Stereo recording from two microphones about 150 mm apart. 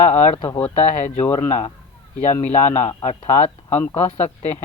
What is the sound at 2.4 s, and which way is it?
Speech, 50° left (ahead or behind).